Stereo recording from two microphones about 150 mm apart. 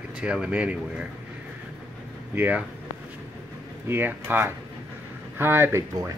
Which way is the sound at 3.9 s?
15° right (ahead or behind).